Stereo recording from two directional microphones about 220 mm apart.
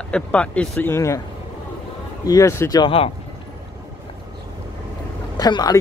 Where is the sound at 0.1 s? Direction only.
5° left (ahead or behind).